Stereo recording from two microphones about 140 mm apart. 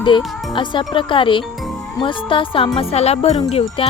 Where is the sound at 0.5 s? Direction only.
35° left (ahead or behind).